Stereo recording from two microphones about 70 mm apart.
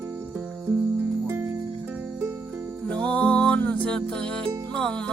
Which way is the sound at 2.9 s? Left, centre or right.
Centre.